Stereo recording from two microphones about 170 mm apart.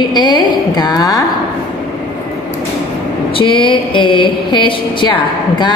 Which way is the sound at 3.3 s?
30° left (ahead or behind).